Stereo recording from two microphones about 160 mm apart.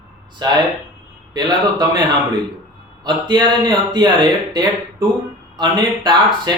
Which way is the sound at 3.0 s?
25° right (ahead or behind).